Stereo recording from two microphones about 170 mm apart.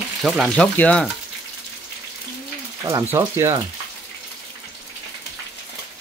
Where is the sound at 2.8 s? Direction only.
15° right (ahead or behind).